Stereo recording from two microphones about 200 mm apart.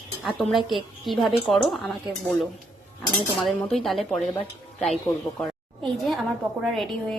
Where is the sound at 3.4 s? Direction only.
Centre (ahead or behind).